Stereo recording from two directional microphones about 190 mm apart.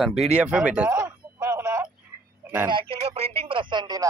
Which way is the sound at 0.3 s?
5° right (ahead or behind).